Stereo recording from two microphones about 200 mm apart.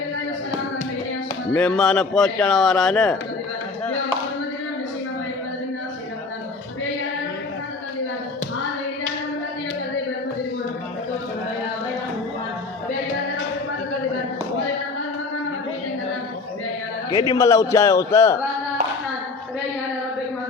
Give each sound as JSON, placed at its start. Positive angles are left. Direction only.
{"t": 1.5, "sound": "a man's voice", "side_deg": 5}
{"t": 17.1, "sound": "a man's voice", "side_deg": 15}